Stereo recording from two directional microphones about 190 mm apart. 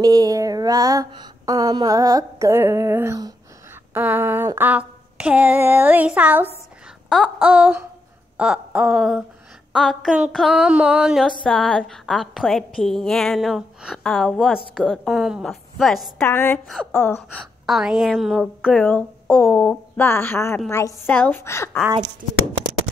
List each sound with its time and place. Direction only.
0.0 s speech: 20° right (ahead or behind)
7.1 s female singing: centre (ahead or behind)
16.3 s a woman's voice: 10° left (ahead or behind)
17.6 s a woman's voice: centre (ahead or behind)